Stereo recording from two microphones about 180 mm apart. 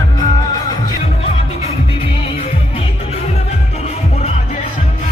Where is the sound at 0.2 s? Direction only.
20° left (ahead or behind).